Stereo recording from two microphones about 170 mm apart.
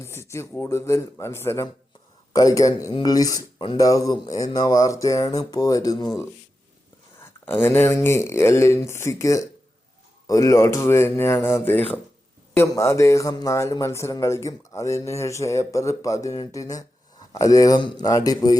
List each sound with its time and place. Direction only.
0.0 s a man's voice: 15° left (ahead or behind)